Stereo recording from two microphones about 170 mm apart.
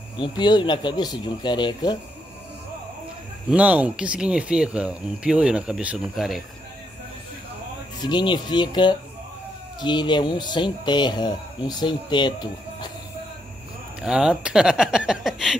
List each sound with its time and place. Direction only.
0.2 s speech: 25° left (ahead or behind)
3.4 s speech: 5° right (ahead or behind)
8.0 s speech: 25° left (ahead or behind)
14.0 s speech: 5° right (ahead or behind)